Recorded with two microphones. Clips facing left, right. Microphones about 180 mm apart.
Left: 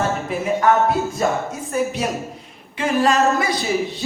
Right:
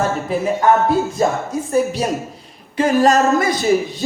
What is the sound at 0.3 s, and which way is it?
Speech, 30° right (ahead or behind).